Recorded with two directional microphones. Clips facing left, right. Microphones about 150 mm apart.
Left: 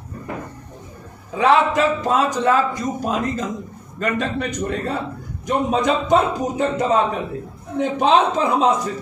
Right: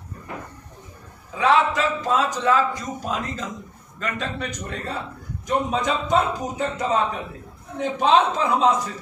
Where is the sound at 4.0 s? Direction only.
55° left (ahead or behind).